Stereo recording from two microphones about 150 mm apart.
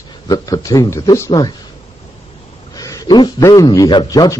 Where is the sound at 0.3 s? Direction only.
25° left (ahead or behind).